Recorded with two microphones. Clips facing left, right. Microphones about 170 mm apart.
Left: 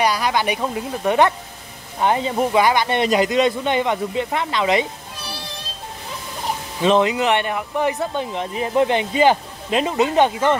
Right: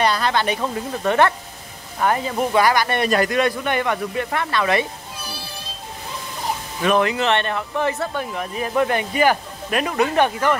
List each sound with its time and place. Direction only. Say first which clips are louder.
0.0 s speech: even; 10° left (ahead or behind)
6.8 s speech: left 2 dB; 20° left (ahead or behind)